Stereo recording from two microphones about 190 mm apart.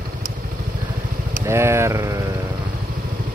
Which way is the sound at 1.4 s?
15° right (ahead or behind).